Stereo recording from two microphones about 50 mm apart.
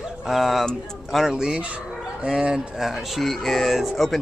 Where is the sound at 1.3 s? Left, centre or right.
Centre.